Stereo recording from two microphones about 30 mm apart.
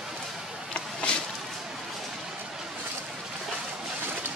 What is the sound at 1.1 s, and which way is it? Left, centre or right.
Whip, left.